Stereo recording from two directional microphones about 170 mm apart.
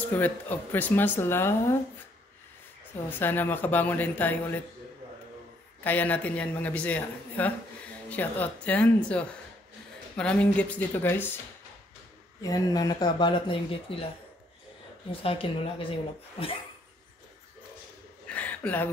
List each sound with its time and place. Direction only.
0.1 s speech: 10° left (ahead or behind)
3.1 s speech: 10° left (ahead or behind)
5.9 s speech: 10° left (ahead or behind)
12.4 s speech: 20° left (ahead or behind)
15.0 s speech: 35° left (ahead or behind)
18.2 s a sound: 10° left (ahead or behind)